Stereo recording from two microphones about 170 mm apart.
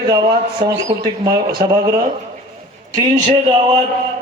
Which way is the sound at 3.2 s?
25° right (ahead or behind).